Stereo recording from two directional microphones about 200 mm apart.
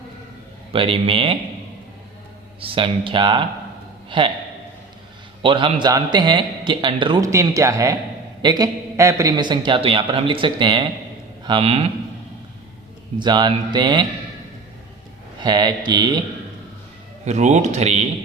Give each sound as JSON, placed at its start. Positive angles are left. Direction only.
{"t": 0.7, "sound": "a man's voice", "side_deg": -25}
{"t": 2.6, "sound": "a man's voice", "side_deg": -25}
{"t": 5.4, "sound": "a man's voice", "side_deg": -25}
{"t": 13.1, "sound": "a man's voice", "side_deg": -20}
{"t": 15.4, "sound": "a man's voice", "side_deg": -20}
{"t": 17.2, "sound": "speech", "side_deg": -35}